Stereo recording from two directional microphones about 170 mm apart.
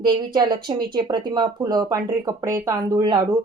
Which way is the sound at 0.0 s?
25° right (ahead or behind).